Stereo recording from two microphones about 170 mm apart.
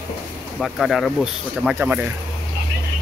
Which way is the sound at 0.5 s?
Centre (ahead or behind).